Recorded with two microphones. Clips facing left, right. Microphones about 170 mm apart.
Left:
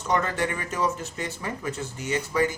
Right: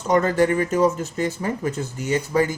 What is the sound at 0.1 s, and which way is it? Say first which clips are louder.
Speech: right 8 dB; 45° right (ahead or behind).